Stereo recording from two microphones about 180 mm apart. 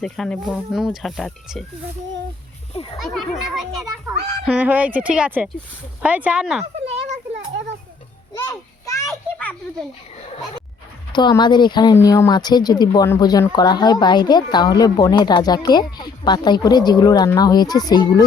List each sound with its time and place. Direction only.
0.0 s speech: centre (ahead or behind)
3.0 s speech: centre (ahead or behind)
6.8 s children playing: 35° right (ahead or behind)
8.3 s a sound: 20° left (ahead or behind)
11.1 s speech: 25° left (ahead or behind)